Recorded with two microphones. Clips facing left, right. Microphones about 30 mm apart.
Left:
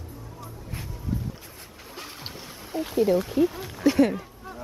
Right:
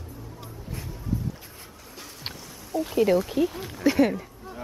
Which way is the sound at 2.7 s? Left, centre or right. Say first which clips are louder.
Right 2 dB; left.